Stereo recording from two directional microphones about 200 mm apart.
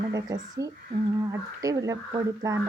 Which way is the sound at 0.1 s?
15° right (ahead or behind).